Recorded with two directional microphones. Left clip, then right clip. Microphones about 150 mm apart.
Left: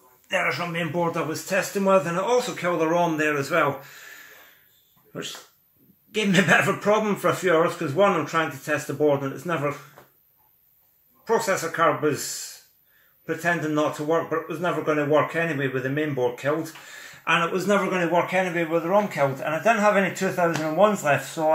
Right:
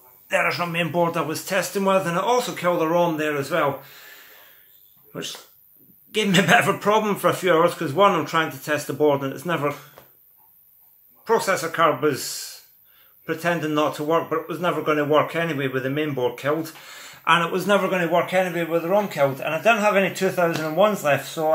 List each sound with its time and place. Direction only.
0.3 s speech: 15° right (ahead or behind)
2.7 s speech: centre (ahead or behind)
3.2 s speech: 15° right (ahead or behind)
6.1 s speech: 10° right (ahead or behind)
11.2 s speech: 5° right (ahead or behind)
13.2 s a man's voice: 5° right (ahead or behind)
18.1 s speech: 5° right (ahead or behind)